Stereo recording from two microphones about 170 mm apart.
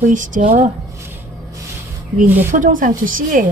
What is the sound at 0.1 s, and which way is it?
Speech, 50° right (ahead or behind).